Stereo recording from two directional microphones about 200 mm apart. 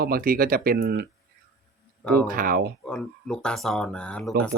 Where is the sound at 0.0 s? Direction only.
50° right (ahead or behind).